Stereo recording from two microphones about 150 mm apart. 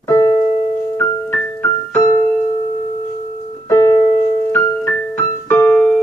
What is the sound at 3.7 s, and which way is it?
Piano, 20° left (ahead or behind).